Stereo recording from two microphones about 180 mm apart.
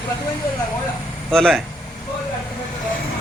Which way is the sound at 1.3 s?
5° left (ahead or behind).